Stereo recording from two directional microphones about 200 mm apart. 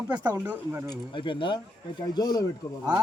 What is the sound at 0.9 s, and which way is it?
Speech, 25° left (ahead or behind).